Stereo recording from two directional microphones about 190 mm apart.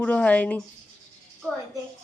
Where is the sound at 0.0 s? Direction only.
5° left (ahead or behind).